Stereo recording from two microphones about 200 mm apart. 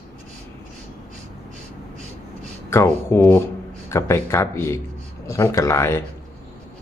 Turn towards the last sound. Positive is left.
turn(degrees=15)  # may be behind; listen again after turning